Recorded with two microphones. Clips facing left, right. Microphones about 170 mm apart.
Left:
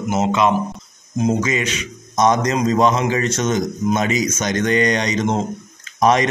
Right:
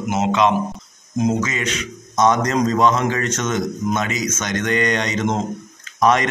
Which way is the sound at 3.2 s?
30° left (ahead or behind).